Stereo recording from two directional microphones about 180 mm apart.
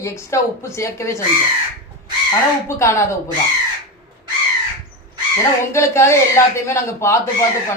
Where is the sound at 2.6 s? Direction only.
15° left (ahead or behind).